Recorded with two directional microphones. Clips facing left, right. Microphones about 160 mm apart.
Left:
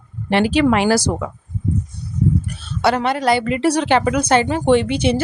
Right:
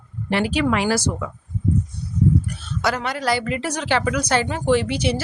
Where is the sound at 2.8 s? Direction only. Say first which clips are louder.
Left 6 dB; 30° left (ahead or behind).